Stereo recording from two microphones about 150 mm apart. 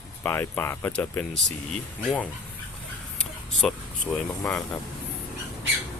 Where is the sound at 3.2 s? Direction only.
5° left (ahead or behind).